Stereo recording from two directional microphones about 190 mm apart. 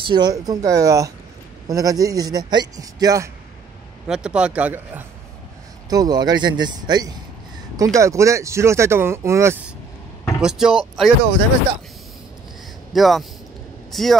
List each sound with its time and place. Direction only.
0.0 s a man's voice: 20° right (ahead or behind)
4.1 s speech: 5° right (ahead or behind)
5.9 s a man's voice: 20° right (ahead or behind)
10.2 s speech: 5° right (ahead or behind)
12.9 s a man's voice: centre (ahead or behind)